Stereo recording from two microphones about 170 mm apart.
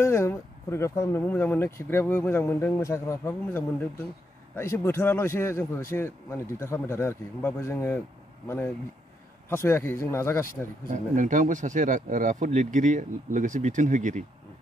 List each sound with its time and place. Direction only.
0.0 s speech: 15° left (ahead or behind)
10.9 s speech: 50° right (ahead or behind)